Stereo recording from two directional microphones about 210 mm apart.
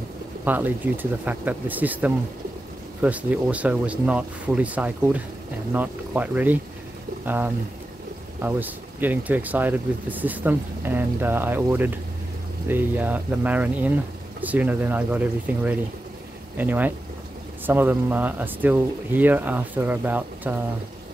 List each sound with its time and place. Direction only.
0.5 s speech: 10° right (ahead or behind)